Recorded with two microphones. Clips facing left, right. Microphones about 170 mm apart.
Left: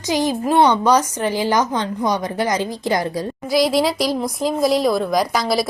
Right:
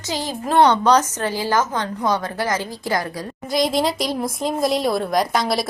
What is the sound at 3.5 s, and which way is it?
A woman's voice, centre (ahead or behind).